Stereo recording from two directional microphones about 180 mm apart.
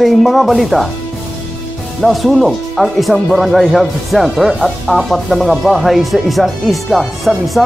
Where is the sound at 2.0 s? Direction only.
Centre (ahead or behind).